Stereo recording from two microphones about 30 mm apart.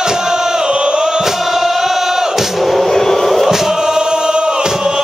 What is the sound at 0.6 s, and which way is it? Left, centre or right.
Chant, right.